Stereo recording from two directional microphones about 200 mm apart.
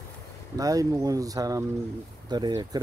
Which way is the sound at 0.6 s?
15° right (ahead or behind).